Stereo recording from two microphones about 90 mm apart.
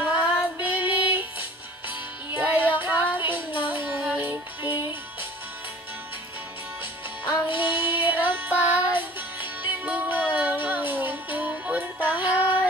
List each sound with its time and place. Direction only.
0.1 s female singing: 15° right (ahead or behind)
1.9 s music: 20° right (ahead or behind)
7.5 s music: 25° right (ahead or behind)